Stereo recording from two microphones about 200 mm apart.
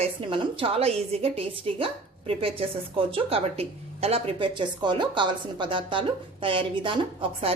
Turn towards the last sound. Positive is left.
turn(degrees=-25)  # may be behind; listen again after turning